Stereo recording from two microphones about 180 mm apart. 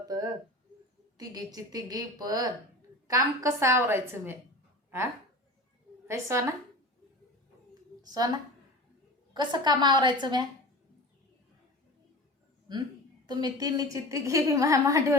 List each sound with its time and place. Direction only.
0.0 s a woman's voice: 20° right (ahead or behind)
6.1 s a woman's voice: 15° right (ahead or behind)
8.0 s a woman's voice: 20° right (ahead or behind)
12.7 s a woman's voice: 25° right (ahead or behind)